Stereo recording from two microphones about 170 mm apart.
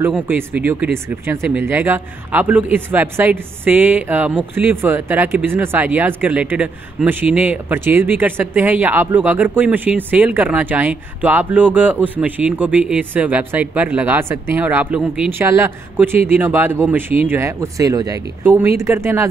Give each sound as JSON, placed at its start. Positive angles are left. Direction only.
{"t": 0.1, "sound": "speech", "side_deg": -10}